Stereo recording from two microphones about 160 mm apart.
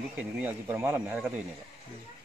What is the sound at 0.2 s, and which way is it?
Speech, 10° right (ahead or behind).